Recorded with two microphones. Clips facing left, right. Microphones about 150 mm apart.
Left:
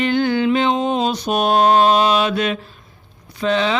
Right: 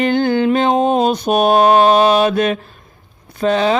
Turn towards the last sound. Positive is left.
turn(degrees=-45)  # may be behind; listen again after turning